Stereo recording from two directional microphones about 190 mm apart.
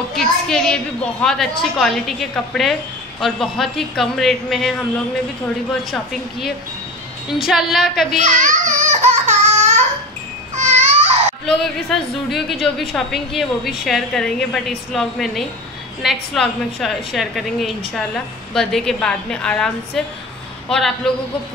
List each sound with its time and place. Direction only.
0.1 s a woman's voice: centre (ahead or behind)
7.2 s a woman's voice: centre (ahead or behind)
8.2 s a sound: 40° right (ahead or behind)
10.6 s babbling: 40° right (ahead or behind)
11.4 s a woman's voice: centre (ahead or behind)